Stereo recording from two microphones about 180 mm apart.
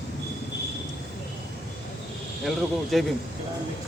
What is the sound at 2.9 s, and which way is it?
Speech, centre (ahead or behind).